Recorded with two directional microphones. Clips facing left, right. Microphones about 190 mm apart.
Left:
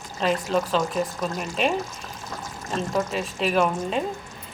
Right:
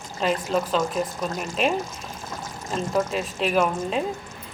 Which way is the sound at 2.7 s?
Centre (ahead or behind).